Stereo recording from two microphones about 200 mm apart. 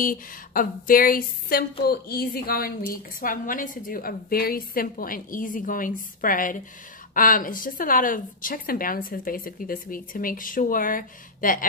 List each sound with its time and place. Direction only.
0.0 s a woman's voice: 45° left (ahead or behind)